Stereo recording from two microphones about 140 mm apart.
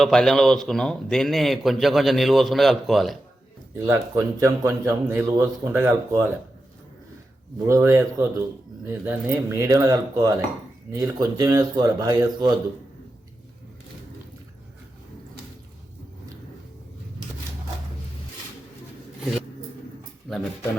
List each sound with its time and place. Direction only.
0.0 s a man's voice: 5° left (ahead or behind)
4.1 s speech: 20° right (ahead or behind)
7.7 s speech: 20° right (ahead or behind)
20.3 s speech: centre (ahead or behind)